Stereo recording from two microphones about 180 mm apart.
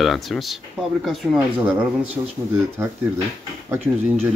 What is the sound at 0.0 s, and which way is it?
Speech, centre (ahead or behind).